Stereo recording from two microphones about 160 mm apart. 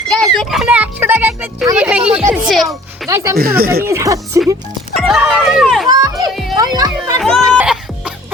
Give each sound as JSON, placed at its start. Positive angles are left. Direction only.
{"t": 0.1, "sound": "a sound", "side_deg": 0}
{"t": 1.7, "sound": "music", "side_deg": -10}
{"t": 2.1, "sound": "a sound", "side_deg": -5}
{"t": 3.3, "sound": "speech", "side_deg": -70}
{"t": 3.8, "sound": "speech", "side_deg": -20}
{"t": 4.9, "sound": "speech", "side_deg": -5}
{"t": 5.9, "sound": "speech", "side_deg": -25}
{"t": 6.3, "sound": "music", "side_deg": 0}
{"t": 6.6, "sound": "music", "side_deg": -25}
{"t": 7.2, "sound": "music", "side_deg": 0}